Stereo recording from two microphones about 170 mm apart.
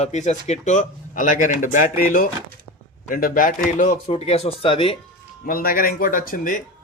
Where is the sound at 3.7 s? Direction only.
40° left (ahead or behind).